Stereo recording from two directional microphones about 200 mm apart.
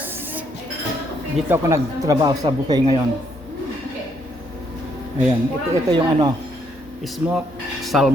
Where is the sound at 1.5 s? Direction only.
15° right (ahead or behind).